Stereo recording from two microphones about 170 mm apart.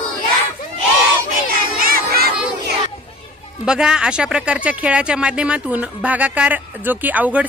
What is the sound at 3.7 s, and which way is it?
Speech, 5° right (ahead or behind).